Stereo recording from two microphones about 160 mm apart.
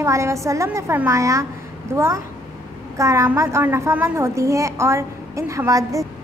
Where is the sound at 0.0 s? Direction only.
20° right (ahead or behind).